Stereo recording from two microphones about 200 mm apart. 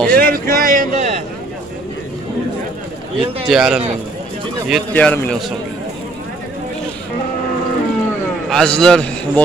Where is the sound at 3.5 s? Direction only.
Centre (ahead or behind).